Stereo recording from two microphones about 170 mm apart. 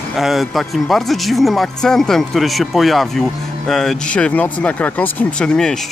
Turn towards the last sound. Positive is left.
turn(degrees=5)  # may be behind; listen again after turning